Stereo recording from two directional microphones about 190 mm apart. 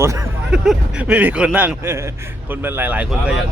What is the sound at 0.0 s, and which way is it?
Speech, 15° right (ahead or behind).